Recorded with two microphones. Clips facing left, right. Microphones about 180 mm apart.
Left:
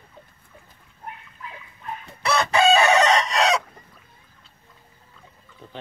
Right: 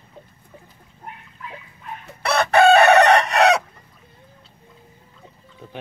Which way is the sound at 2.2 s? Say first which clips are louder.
Right 4 dB; 60° right (ahead or behind).